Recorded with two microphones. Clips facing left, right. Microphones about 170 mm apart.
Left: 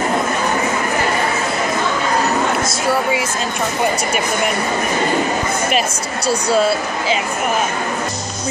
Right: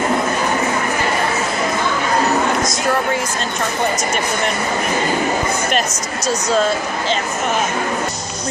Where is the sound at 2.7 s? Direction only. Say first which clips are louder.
Left 1 dB; 5° left (ahead or behind).